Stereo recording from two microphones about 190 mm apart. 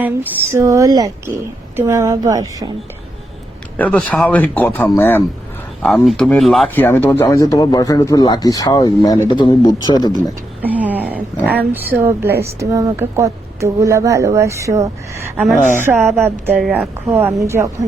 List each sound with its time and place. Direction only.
0.0 s speech: 10° right (ahead or behind)
3.8 s speech: 10° left (ahead or behind)
6.8 s speech: 10° left (ahead or behind)
10.6 s a sound: 10° right (ahead or behind)
11.4 s speech: 10° right (ahead or behind)
16.6 s speech: centre (ahead or behind)
17.1 s speech: 10° right (ahead or behind)